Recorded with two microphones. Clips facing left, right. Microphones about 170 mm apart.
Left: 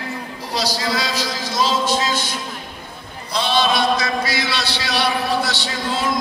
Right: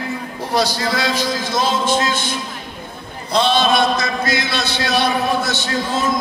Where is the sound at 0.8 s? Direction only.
55° right (ahead or behind).